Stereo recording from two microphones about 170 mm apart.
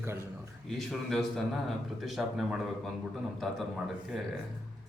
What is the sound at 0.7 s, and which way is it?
Speech, centre (ahead or behind).